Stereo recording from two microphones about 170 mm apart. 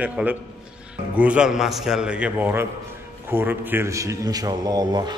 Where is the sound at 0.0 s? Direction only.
10° right (ahead or behind).